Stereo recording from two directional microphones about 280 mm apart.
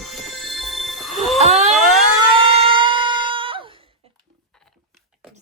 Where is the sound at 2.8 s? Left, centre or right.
Centre.